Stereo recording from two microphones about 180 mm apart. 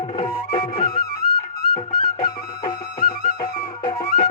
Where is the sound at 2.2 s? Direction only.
30° left (ahead or behind).